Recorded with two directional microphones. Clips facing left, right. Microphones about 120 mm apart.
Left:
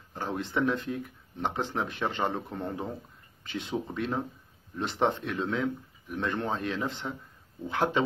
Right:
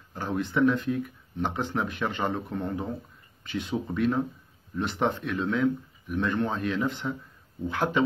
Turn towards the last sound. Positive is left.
turn(degrees=25)  # may be behind; listen again after turning